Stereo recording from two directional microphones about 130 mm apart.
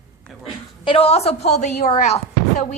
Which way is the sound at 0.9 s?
50° left (ahead or behind).